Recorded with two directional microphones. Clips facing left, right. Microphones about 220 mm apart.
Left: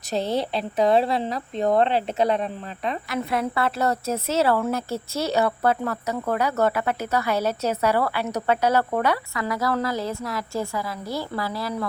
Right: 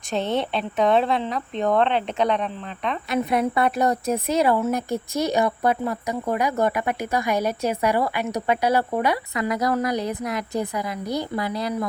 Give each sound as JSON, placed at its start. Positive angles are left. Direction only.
{"t": 0.9, "sound": "speech", "side_deg": 40}
{"t": 3.1, "sound": "a woman's voice", "side_deg": -20}